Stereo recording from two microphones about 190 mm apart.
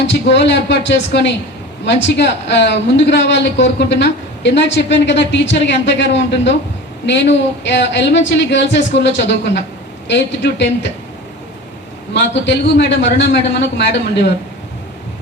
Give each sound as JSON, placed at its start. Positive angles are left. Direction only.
{"t": 0.1, "sound": "a woman's voice", "side_deg": 70}
{"t": 12.1, "sound": "a woman's voice", "side_deg": 70}